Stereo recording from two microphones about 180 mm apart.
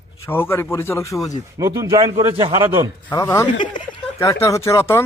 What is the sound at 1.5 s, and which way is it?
A man's voice, 20° right (ahead or behind).